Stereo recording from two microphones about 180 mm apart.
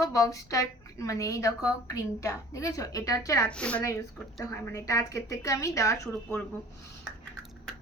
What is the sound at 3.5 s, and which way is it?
Speech, 5° left (ahead or behind).